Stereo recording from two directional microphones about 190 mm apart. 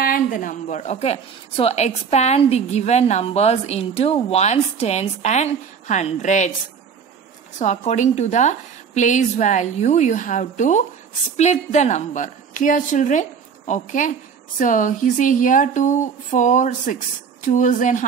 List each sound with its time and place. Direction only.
0.0 s a woman's voice: 45° left (ahead or behind)
7.5 s a woman's voice: 35° left (ahead or behind)